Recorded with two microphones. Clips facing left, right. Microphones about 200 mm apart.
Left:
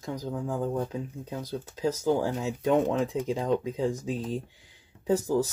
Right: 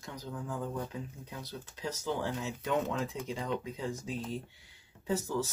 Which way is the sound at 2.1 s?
40° left (ahead or behind).